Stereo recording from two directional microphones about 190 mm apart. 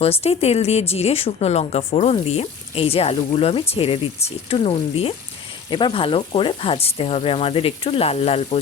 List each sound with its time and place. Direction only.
0.0 s speech: 35° left (ahead or behind)